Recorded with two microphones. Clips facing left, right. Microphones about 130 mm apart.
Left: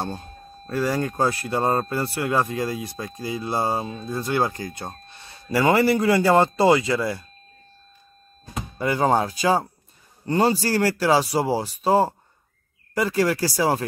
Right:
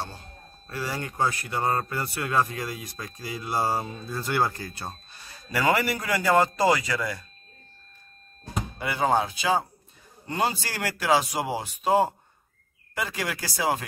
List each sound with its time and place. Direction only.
0.8 s speech: 40° left (ahead or behind); by 4.9 s 15° left (ahead or behind)
5.5 s speech: 30° left (ahead or behind)
8.7 s speech: 40° left (ahead or behind)